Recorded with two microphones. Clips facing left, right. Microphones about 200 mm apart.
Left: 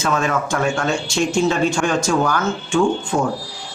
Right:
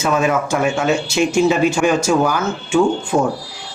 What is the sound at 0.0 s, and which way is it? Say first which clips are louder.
Speech: right 3 dB; 10° right (ahead or behind).